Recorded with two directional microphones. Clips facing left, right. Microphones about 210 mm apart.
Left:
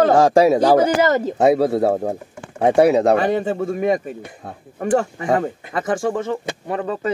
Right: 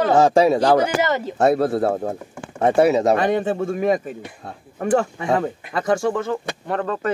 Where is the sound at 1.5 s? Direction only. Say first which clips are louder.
Left 3 dB; centre (ahead or behind).